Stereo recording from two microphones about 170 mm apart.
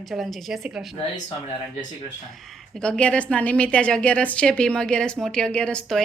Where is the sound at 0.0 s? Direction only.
Centre (ahead or behind).